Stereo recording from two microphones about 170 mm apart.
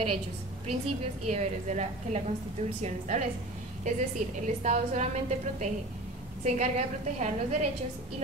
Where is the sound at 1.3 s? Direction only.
45° right (ahead or behind).